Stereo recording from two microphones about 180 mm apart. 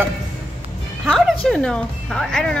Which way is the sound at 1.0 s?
5° left (ahead or behind).